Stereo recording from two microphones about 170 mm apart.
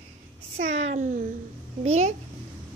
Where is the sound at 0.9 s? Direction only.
50° right (ahead or behind).